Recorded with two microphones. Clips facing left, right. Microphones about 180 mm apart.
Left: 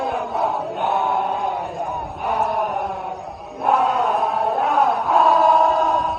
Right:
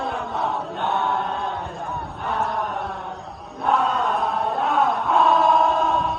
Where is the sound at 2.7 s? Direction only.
Centre (ahead or behind).